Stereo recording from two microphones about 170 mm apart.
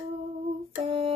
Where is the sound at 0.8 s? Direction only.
35° right (ahead or behind).